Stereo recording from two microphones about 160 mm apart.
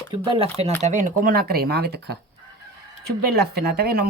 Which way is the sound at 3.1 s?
85° right.